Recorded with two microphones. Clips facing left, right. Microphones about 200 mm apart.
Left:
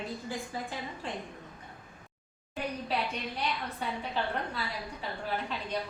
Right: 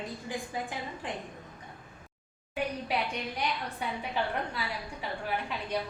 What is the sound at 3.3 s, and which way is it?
Speech, 10° right (ahead or behind).